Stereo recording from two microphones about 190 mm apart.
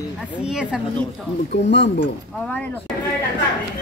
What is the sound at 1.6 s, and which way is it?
Speech, 70° left (ahead or behind).